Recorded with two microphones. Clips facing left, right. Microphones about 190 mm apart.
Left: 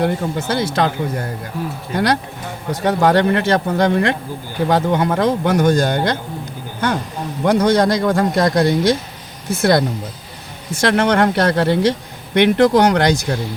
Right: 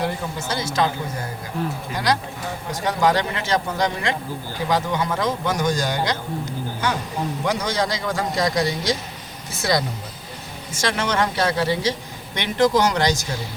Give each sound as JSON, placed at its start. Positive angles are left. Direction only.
{"t": 0.0, "sound": "speech", "side_deg": 60}